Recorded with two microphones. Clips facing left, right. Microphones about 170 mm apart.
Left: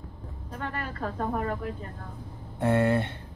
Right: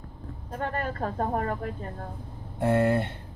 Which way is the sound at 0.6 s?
45° right (ahead or behind).